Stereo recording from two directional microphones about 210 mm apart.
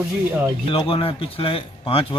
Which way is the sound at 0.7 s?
25° left (ahead or behind).